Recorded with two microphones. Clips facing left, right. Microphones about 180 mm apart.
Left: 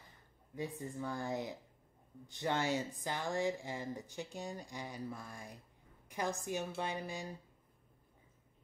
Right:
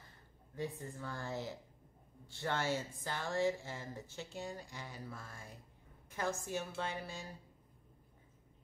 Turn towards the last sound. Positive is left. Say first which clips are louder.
# left 2 dB
turn(degrees=15)  # may be behind; listen again after turning